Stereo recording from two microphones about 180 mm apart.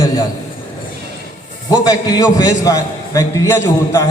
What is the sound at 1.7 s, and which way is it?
A man's voice, 20° left (ahead or behind).